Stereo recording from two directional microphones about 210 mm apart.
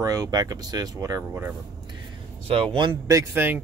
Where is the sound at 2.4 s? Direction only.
25° right (ahead or behind); by 3.6 s 10° right (ahead or behind).